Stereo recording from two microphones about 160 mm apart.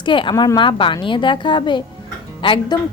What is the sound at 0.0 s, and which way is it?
A woman's voice, 30° left (ahead or behind).